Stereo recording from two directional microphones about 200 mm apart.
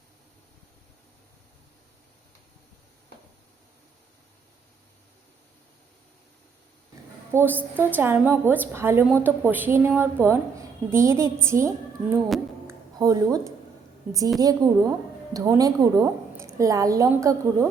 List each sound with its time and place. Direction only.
7.3 s a woman's voice: 10° right (ahead or behind)
12.6 s music: 15° right (ahead or behind)
14.3 s a woman's voice: 20° right (ahead or behind)